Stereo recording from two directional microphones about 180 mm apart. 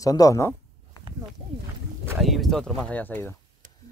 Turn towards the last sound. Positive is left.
turn(degrees=10)  # may be behind; listen again after turning